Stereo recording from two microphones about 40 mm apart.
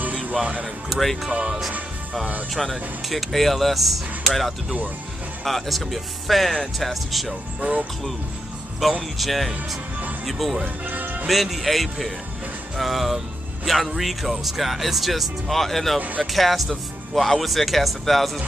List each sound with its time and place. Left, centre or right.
0.1 s music: right
0.8 s speech: centre
2.5 s speech: centre
5.4 s speech: centre
7.6 s speech: right
9.2 s speech: centre
10.9 s music: right
11.2 s speech: centre